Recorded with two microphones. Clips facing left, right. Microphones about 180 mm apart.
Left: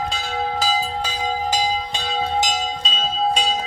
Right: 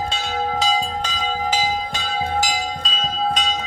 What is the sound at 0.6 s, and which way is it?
Bell, 5° left (ahead or behind).